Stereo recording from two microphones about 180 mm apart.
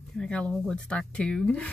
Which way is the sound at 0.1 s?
5° left (ahead or behind).